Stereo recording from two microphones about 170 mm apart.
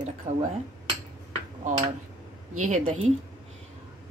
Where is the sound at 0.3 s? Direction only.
40° right (ahead or behind).